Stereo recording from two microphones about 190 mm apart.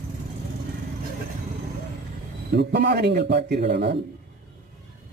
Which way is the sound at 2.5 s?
60° right (ahead or behind).